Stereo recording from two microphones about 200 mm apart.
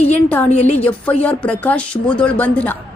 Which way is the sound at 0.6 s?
35° left (ahead or behind).